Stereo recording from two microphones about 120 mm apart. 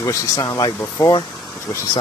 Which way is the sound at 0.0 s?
30° left (ahead or behind).